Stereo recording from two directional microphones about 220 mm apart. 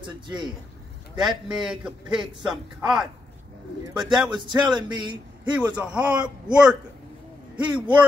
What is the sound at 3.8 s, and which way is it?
A man's voice, 20° right (ahead or behind).